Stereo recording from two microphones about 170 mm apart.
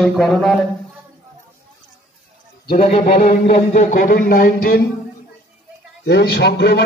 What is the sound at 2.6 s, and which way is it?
A man's voice, 55° left (ahead or behind).